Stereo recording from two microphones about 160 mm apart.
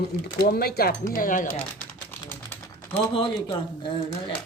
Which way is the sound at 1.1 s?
60° left (ahead or behind).